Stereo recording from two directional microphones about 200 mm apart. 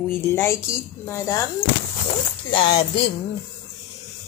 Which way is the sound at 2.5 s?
25° left (ahead or behind).